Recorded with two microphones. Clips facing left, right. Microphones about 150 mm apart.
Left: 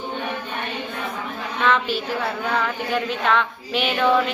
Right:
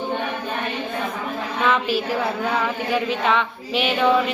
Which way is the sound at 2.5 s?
5° right (ahead or behind).